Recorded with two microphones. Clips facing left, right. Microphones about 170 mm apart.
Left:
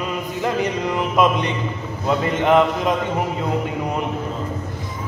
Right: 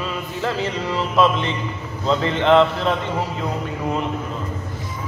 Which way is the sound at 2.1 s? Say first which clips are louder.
Right 1 dB; 10° left (ahead or behind).